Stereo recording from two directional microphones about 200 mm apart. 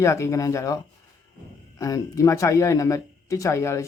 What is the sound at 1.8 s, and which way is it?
Speech, 15° left (ahead or behind).